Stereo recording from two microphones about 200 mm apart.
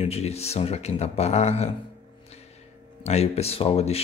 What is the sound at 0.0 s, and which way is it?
Speech, 30° left (ahead or behind).